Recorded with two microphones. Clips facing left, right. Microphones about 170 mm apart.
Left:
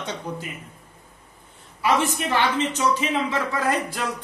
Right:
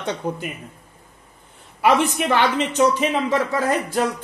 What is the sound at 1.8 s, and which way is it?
A man's voice, 60° right (ahead or behind).